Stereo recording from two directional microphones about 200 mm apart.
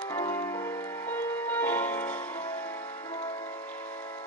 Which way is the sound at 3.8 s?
35° left (ahead or behind).